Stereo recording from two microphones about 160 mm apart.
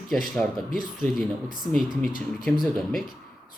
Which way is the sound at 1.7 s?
Centre (ahead or behind).